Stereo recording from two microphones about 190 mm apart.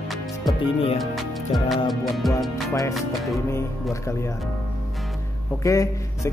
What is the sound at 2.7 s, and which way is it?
Music, 15° left (ahead or behind).